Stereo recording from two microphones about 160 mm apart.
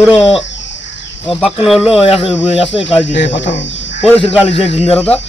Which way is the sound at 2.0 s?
35° left (ahead or behind).